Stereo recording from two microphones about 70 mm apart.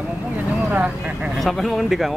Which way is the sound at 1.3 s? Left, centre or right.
Centre.